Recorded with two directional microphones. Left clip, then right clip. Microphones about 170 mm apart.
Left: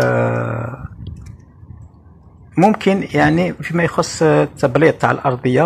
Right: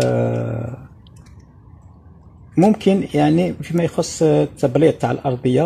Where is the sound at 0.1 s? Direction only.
35° right (ahead or behind).